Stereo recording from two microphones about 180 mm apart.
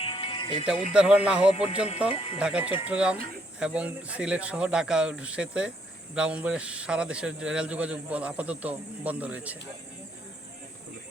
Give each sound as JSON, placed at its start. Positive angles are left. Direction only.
{"t": 0.0, "sound": "music", "side_deg": 30}
{"t": 0.9, "sound": "a man's voice", "side_deg": -5}
{"t": 2.1, "sound": "speech", "side_deg": 30}
{"t": 2.4, "sound": "a man's voice", "side_deg": -5}